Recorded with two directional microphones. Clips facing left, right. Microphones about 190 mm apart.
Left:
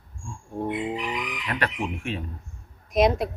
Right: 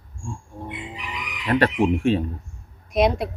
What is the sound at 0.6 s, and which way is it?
Chicken, 50° left (ahead or behind).